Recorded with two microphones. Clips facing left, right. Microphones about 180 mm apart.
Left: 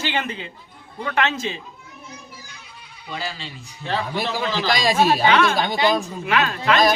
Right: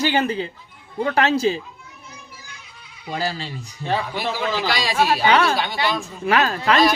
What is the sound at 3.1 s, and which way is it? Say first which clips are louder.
Speech: right 5 dB; 40° right (ahead or behind).